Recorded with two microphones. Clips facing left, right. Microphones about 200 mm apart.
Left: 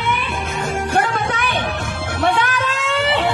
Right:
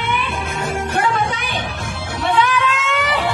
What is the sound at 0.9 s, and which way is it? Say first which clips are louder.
Music: even; 50° left (ahead or behind).